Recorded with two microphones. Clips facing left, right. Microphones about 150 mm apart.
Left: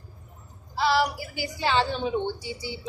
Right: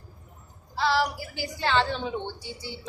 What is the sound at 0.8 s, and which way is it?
A woman's voice, 5° left (ahead or behind).